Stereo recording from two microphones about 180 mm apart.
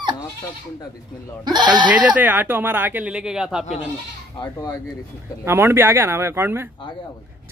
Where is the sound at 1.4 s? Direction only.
25° right (ahead or behind).